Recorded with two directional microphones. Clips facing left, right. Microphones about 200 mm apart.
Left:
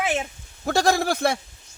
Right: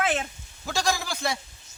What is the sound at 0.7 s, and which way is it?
Speech, 60° left (ahead or behind).